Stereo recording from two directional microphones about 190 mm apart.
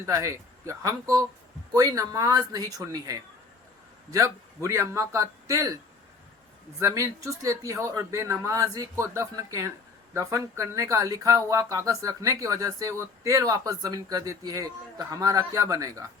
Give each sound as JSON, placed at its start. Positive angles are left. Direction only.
{"t": 0.0, "sound": "speech", "side_deg": -15}